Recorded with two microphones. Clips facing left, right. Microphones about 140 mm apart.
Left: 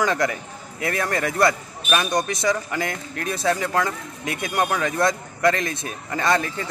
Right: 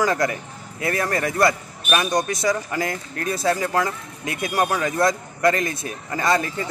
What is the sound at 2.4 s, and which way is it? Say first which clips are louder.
Speech: right 1 dB; 25° right (ahead or behind).